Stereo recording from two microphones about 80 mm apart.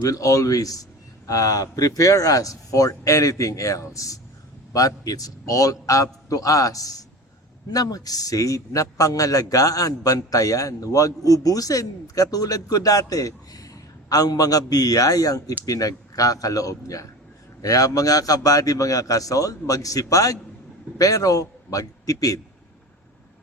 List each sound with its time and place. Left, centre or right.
0.0 s a man's voice: left